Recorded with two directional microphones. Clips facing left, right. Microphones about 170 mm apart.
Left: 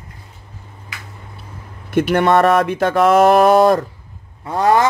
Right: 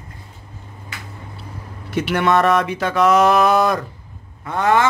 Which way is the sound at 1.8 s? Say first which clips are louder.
Left 4 dB; 50° left (ahead or behind).